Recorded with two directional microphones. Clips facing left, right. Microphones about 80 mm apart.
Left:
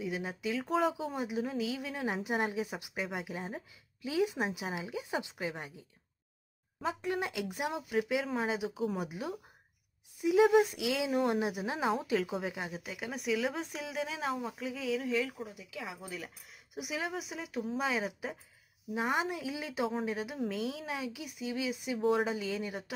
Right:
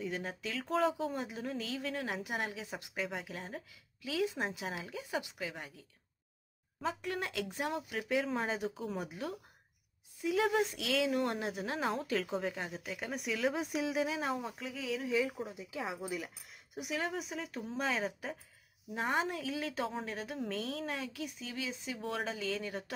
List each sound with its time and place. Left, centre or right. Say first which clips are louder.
0.0 s speech: left 3 dB; centre; by 5.7 s left
6.8 s speech: left 3 dB; centre
15.5 s speech: right 3 dB; right
16.2 s speech: right 2 dB; centre